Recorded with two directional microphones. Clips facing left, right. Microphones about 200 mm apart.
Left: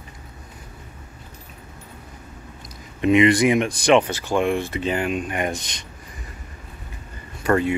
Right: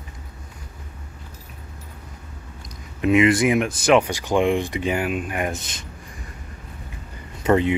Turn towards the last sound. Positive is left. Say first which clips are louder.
# right 1 dB
turn(degrees=-20)  # may be behind; listen again after turning